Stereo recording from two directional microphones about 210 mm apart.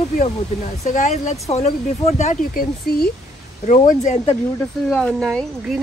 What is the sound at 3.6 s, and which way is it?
Speech, 35° left (ahead or behind).